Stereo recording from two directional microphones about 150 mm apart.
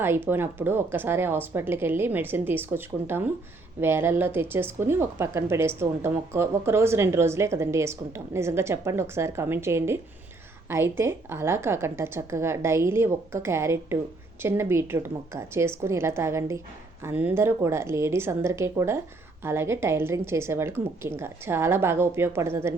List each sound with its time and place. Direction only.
0.3 s a woman's voice: 15° right (ahead or behind)